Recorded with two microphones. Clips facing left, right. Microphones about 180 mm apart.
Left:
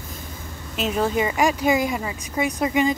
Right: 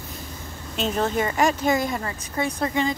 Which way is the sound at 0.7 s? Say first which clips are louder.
Left 1 dB; 5° left (ahead or behind).